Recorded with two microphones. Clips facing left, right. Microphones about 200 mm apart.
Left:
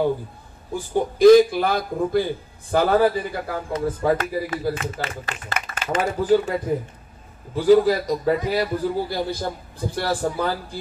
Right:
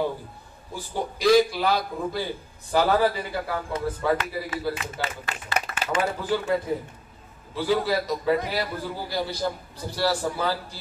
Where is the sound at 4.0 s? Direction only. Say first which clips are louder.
Left 4 dB; 45° left (ahead or behind).